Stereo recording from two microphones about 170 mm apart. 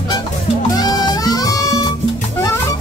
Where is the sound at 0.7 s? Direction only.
20° left (ahead or behind).